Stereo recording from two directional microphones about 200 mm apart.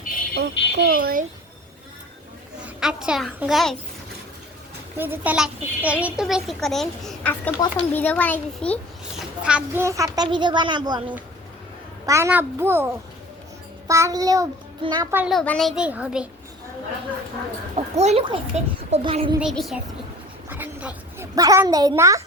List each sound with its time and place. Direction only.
0.3 s speech: 50° right (ahead or behind)
2.6 s speech: 5° right (ahead or behind)
4.9 s a child's voice: 10° right (ahead or behind); by 9.2 s 5° left (ahead or behind)
9.4 s a woman's voice: 5° right (ahead or behind); by 11.0 s 20° right (ahead or behind)
12.0 s a child's voice: 15° right (ahead or behind)
15.1 s speech: 5° right (ahead or behind)
17.7 s speech: 35° right (ahead or behind)
19.4 s a child's voice: centre (ahead or behind)